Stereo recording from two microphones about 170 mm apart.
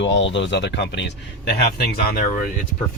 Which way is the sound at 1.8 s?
60° left (ahead or behind).